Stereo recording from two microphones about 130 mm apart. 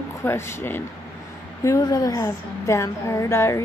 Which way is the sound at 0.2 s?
20° left (ahead or behind).